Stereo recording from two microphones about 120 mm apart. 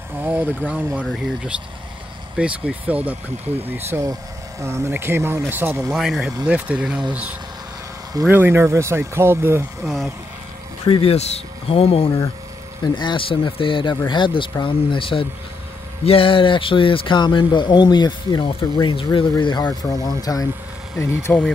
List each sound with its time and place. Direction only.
0.2 s speech: 15° right (ahead or behind)
2.3 s speech: 10° right (ahead or behind)
5.9 s speech: 5° right (ahead or behind); by 9.7 s 20° right (ahead or behind)
9.8 s speech: 5° right (ahead or behind)
10.9 s speech: 55° left (ahead or behind)
12.9 s a man's voice: 40° left (ahead or behind); by 21.4 s 20° left (ahead or behind)